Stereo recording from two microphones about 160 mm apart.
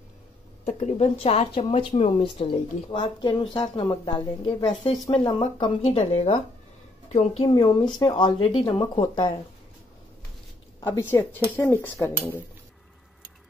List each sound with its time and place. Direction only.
0.7 s speech: 45° left (ahead or behind)
7.4 s speech: 25° left (ahead or behind)
11.0 s speech: 15° left (ahead or behind)